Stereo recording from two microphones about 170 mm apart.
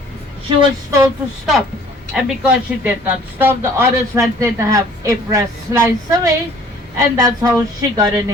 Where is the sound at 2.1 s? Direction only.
10° right (ahead or behind).